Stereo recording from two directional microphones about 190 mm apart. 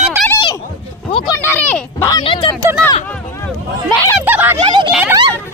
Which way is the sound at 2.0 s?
25° left (ahead or behind).